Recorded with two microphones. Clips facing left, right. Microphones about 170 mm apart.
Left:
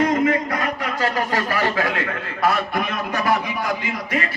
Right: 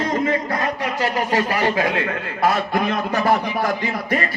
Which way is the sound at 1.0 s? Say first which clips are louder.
Right 1 dB; 15° right (ahead or behind).